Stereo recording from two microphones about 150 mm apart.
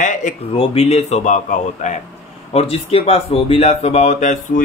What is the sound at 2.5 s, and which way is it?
Speech, 40° left (ahead or behind).